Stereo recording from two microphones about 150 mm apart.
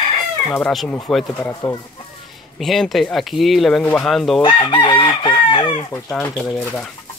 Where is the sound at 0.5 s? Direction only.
5° left (ahead or behind).